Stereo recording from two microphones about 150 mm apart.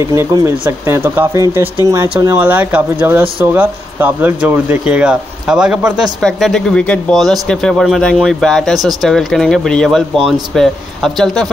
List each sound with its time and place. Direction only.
0.0 s speech: 20° right (ahead or behind); by 11.4 s centre (ahead or behind)